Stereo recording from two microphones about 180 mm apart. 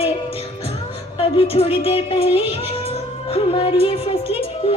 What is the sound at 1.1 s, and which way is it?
Music, 30° left (ahead or behind).